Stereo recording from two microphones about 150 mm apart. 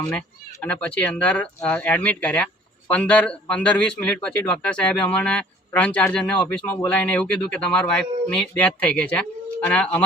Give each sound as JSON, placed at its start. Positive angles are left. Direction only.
{"t": 0.1, "sound": "a man's voice", "side_deg": 10}